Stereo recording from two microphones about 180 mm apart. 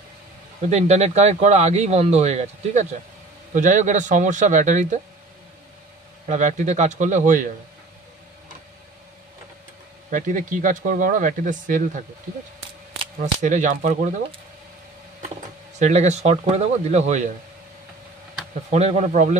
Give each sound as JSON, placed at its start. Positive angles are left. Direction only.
{"t": 0.6, "sound": "speech", "side_deg": -40}
{"t": 6.2, "sound": "speech", "side_deg": -40}
{"t": 10.1, "sound": "speech", "side_deg": -45}
{"t": 13.2, "sound": "speech", "side_deg": -45}
{"t": 15.8, "sound": "speech", "side_deg": -40}
{"t": 18.7, "sound": "speech", "side_deg": -35}